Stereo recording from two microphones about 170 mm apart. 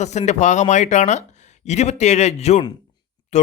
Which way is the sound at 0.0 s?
40° left (ahead or behind).